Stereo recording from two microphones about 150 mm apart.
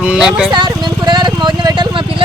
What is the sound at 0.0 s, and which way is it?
Vehicle, 5° right (ahead or behind).